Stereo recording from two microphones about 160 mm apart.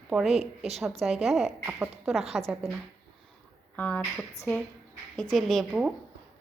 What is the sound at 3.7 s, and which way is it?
A woman's voice, 10° left (ahead or behind).